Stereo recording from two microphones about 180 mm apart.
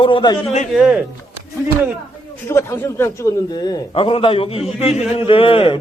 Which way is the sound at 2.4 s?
15° left (ahead or behind).